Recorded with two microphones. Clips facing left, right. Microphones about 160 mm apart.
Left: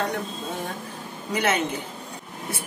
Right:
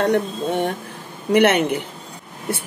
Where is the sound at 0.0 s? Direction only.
70° right (ahead or behind).